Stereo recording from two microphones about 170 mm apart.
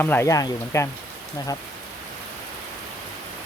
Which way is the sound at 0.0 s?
15° left (ahead or behind).